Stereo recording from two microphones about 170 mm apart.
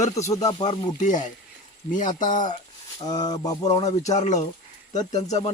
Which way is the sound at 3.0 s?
25° left (ahead or behind).